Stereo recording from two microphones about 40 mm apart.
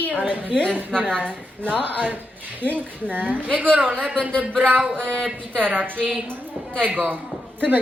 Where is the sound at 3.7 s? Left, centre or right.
Right.